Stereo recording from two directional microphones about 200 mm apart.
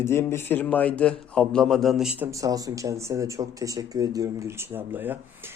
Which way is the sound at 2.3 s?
15° right (ahead or behind).